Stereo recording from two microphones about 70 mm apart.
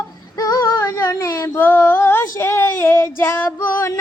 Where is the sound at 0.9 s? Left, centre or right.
Left.